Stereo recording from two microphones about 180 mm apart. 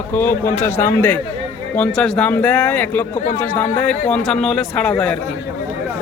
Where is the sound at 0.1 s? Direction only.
10° left (ahead or behind).